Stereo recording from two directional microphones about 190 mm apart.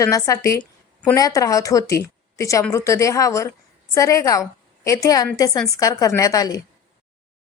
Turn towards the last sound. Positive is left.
turn(degrees=20)  # may be behind; listen again after turning